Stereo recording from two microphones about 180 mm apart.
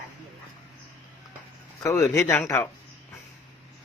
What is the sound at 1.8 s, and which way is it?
Speech, 15° left (ahead or behind).